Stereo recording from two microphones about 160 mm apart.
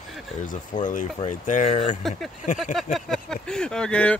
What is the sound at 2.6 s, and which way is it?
Speech, centre (ahead or behind).